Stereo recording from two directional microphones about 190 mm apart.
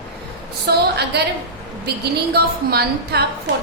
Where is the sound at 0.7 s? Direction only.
60° right (ahead or behind).